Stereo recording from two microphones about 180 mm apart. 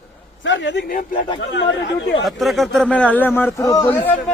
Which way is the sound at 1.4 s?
90° left.